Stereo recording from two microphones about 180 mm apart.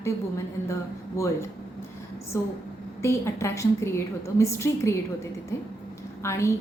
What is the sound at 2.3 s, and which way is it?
A woman's voice, 15° left (ahead or behind).